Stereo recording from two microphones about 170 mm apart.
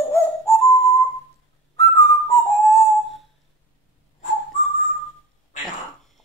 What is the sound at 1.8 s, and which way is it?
Whistling, 20° left (ahead or behind).